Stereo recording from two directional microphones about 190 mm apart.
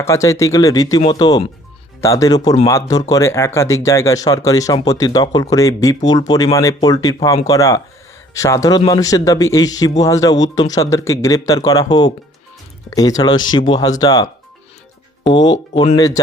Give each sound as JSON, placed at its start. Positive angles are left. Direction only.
{"t": 0.0, "sound": "speech", "side_deg": 15}
{"t": 16.0, "sound": "speech", "side_deg": 20}